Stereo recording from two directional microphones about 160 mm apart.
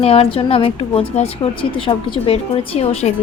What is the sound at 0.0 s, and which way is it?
Speech, 35° left (ahead or behind).